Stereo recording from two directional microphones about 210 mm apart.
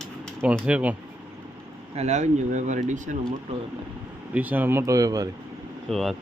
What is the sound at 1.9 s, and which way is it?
Speech, 30° right (ahead or behind).